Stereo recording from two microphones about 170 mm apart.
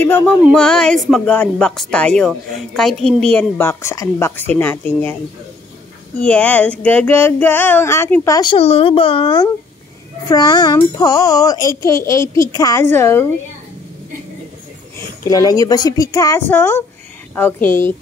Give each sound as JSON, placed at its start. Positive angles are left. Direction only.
{"t": 0.0, "sound": "a woman's voice", "side_deg": 10}
{"t": 6.1, "sound": "female singing", "side_deg": 5}
{"t": 10.2, "sound": "a child's voice", "side_deg": 25}
{"t": 15.0, "sound": "a child's voice", "side_deg": 20}
{"t": 17.4, "sound": "female singing", "side_deg": 10}